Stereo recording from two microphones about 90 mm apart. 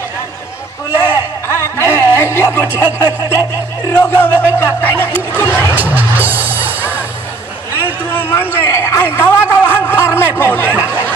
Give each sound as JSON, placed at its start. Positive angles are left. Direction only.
{"t": 1.5, "sound": "music", "side_deg": 30}
{"t": 2.8, "sound": "speech", "side_deg": 45}
{"t": 3.9, "sound": "speech", "side_deg": 25}
{"t": 5.9, "sound": "music", "side_deg": -20}
{"t": 7.7, "sound": "a sound", "side_deg": 25}
{"t": 8.5, "sound": "speech", "side_deg": 30}